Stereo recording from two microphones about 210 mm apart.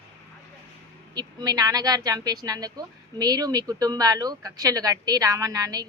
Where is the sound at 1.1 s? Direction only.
20° right (ahead or behind).